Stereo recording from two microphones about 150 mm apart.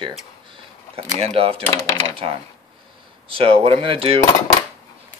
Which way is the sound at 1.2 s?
40° right (ahead or behind).